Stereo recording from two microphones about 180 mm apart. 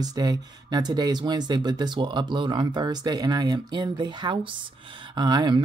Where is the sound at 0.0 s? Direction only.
20° right (ahead or behind).